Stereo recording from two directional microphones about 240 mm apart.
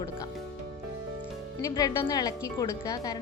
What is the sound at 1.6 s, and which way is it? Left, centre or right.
A woman's voice, centre.